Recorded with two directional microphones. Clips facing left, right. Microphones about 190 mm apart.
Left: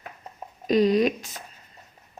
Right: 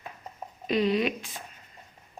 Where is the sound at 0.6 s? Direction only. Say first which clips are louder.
Left 5 dB; 40° left (ahead or behind).